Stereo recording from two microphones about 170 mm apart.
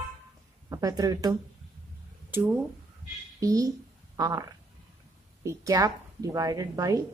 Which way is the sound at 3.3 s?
20° right (ahead or behind).